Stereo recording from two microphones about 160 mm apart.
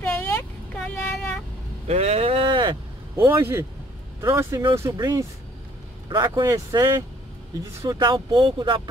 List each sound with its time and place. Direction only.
0.2 s vehicle: 10° left (ahead or behind)
1.9 s vehicle: 40° right (ahead or behind)
3.3 s speech: 15° right (ahead or behind)